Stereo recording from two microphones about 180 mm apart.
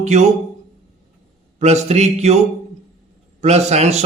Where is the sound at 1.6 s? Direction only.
40° right (ahead or behind).